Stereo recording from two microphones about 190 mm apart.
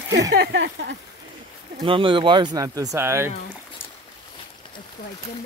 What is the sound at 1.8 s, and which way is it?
Speech, 25° right (ahead or behind).